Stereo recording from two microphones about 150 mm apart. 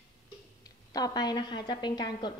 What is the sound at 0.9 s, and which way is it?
A woman's voice, 25° left (ahead or behind).